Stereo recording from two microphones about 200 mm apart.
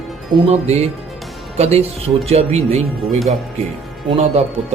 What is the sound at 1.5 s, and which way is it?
Speech, 30° right (ahead or behind).